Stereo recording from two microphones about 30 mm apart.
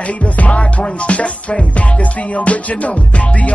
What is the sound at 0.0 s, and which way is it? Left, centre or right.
Music, left.